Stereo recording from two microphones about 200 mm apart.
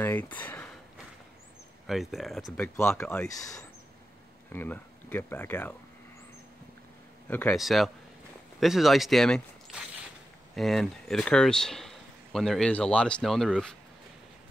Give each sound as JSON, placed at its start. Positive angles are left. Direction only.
{"t": 0.0, "sound": "speech", "side_deg": 10}
{"t": 1.9, "sound": "speech", "side_deg": 0}
{"t": 7.2, "sound": "speech", "side_deg": 10}